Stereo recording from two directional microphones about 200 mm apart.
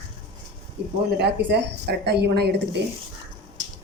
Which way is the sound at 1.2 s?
60° right (ahead or behind).